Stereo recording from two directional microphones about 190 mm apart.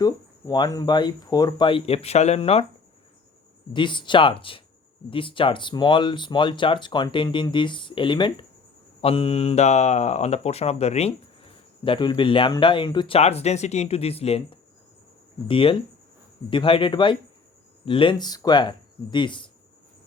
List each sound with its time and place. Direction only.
0.0 s speech: 20° left (ahead or behind)
3.7 s speech: 25° left (ahead or behind)